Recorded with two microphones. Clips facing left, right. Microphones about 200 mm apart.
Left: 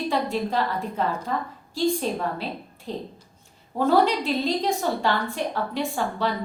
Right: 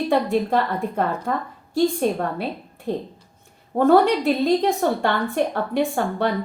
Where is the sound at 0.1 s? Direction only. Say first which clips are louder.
Right 7 dB; 60° right (ahead or behind).